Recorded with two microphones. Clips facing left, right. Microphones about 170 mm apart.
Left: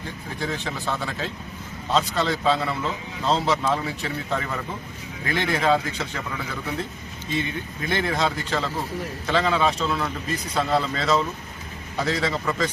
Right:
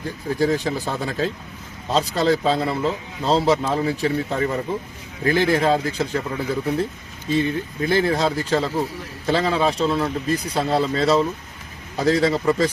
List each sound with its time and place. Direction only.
0.3 s speech: 40° right (ahead or behind)